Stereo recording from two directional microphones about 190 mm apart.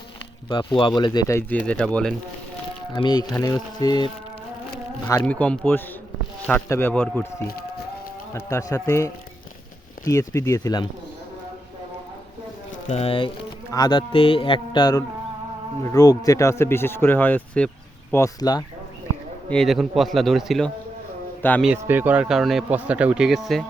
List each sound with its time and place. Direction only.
0.7 s a man's voice: 25° left (ahead or behind); by 2.1 s 5° left (ahead or behind)
2.9 s a man's voice: 20° left (ahead or behind)
5.2 s speech: 5° left (ahead or behind)
8.3 s speech: 15° left (ahead or behind)
12.9 s a man's voice: 30° left (ahead or behind); by 17.7 s 5° left (ahead or behind)
18.1 s a man's voice: 20° left (ahead or behind)
19.5 s speech: centre (ahead or behind)